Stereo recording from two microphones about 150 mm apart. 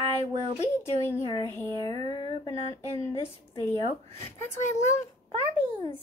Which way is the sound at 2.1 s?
30° left (ahead or behind).